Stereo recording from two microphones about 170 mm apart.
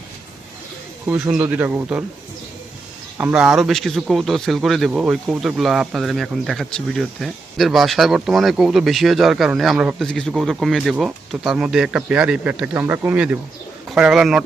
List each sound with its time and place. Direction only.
1.0 s speech: 20° right (ahead or behind)
3.2 s speech: 10° right (ahead or behind)